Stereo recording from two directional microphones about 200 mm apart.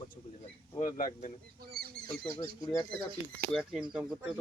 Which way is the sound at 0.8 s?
40° left (ahead or behind).